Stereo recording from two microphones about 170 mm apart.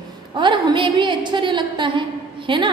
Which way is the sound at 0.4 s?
30° right (ahead or behind).